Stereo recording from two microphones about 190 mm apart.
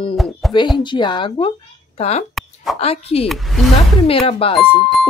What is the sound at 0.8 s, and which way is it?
Speech, 25° left (ahead or behind).